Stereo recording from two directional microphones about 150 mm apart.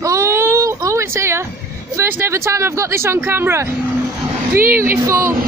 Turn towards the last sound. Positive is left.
turn(degrees=-15)  # may be behind; listen again after turning